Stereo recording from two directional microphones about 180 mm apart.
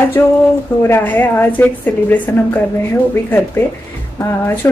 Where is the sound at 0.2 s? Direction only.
15° left (ahead or behind).